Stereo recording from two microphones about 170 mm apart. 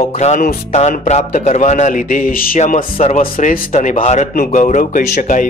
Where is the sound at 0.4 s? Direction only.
60° left (ahead or behind).